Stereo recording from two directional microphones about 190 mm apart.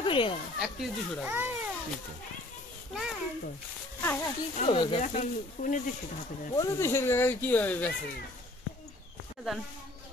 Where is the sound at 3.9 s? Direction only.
10° left (ahead or behind).